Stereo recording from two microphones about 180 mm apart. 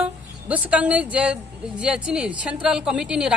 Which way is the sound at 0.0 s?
10° right (ahead or behind).